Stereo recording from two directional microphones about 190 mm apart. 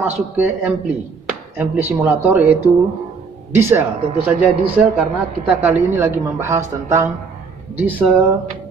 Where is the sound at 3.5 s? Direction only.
10° right (ahead or behind).